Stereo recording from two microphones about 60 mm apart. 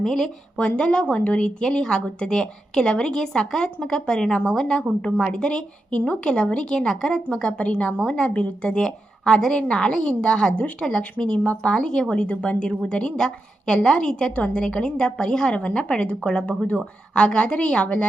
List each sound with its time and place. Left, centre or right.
0.0 s a woman's voice: centre